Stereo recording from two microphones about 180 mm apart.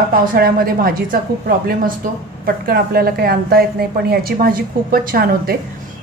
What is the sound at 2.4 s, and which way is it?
A woman's voice, 55° right (ahead or behind).